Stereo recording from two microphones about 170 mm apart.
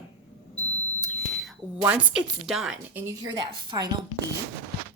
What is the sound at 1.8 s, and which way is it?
A woman's voice, 10° right (ahead or behind).